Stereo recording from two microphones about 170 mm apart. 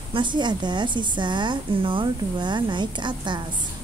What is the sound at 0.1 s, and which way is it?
A woman's voice, 25° right (ahead or behind).